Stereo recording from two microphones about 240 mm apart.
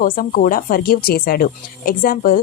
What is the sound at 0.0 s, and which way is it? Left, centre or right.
Speech, left.